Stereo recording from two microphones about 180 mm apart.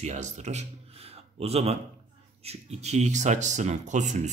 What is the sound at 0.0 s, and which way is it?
Speech, 40° right (ahead or behind).